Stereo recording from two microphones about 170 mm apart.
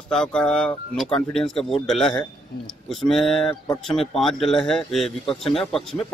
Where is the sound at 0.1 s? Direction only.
5° left (ahead or behind).